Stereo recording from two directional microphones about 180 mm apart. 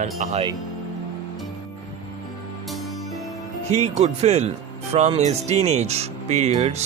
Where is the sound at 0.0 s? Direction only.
40° right (ahead or behind).